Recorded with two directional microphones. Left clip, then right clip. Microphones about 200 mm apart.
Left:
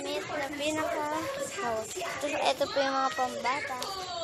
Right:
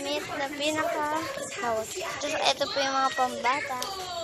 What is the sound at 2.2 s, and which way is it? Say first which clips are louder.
Speech: right 2 dB; 30° left (ahead or behind).